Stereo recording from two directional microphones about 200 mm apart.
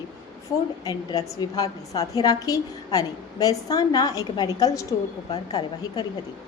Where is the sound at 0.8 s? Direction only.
15° left (ahead or behind).